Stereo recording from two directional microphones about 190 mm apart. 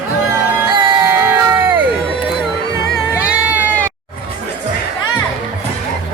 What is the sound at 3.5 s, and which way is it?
Sheep, 10° right (ahead or behind).